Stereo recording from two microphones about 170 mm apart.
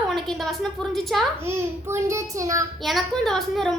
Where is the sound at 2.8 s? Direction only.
Centre (ahead or behind).